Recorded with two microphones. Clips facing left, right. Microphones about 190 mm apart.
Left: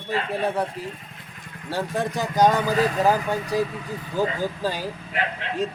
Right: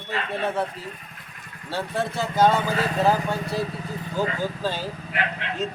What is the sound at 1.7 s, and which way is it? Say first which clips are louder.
Speech: left 1 dB; 15° left (ahead or behind).